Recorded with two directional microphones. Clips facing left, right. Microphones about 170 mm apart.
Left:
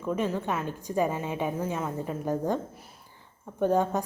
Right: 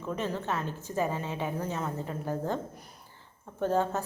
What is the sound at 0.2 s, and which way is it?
A woman's voice, 10° left (ahead or behind).